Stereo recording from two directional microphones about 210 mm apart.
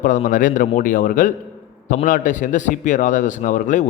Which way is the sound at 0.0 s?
40° left (ahead or behind).